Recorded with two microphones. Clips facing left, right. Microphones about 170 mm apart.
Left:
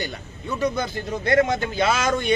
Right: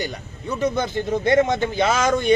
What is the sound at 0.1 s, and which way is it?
A man's voice, 20° right (ahead or behind).